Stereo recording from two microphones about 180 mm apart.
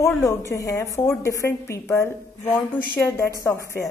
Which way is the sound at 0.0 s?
15° left (ahead or behind).